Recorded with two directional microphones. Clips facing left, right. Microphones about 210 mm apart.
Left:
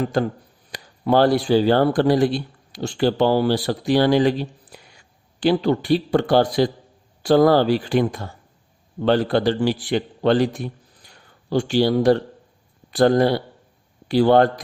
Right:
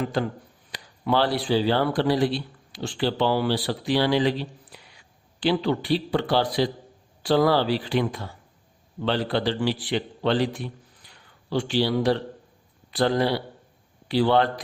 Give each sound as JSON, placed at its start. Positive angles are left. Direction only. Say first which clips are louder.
{"t": 0.0, "sound": "a man's voice", "louder": "left 5 dB", "side_deg": 45}